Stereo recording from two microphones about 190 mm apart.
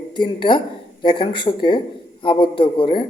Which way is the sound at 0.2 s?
25° left (ahead or behind).